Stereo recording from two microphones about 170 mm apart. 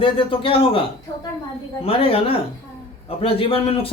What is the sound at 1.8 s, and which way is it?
Speech, 35° left (ahead or behind).